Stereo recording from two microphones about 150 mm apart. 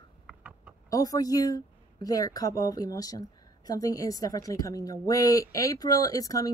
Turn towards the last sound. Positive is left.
turn(degrees=25)  # may be behind; listen again after turning